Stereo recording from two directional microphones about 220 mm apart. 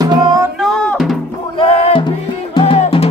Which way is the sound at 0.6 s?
5° left (ahead or behind).